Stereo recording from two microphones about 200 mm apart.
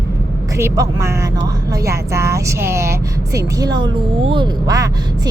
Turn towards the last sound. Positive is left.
turn(degrees=-20)  # may be behind; listen again after turning